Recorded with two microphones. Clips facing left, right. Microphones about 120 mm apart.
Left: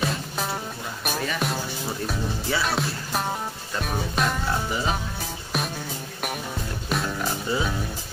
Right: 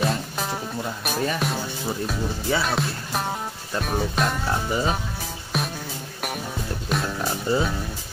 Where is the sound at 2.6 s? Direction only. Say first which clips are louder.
Right 1 dB; centre (ahead or behind).